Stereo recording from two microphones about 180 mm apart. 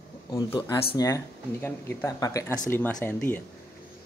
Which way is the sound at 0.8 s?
20° left (ahead or behind).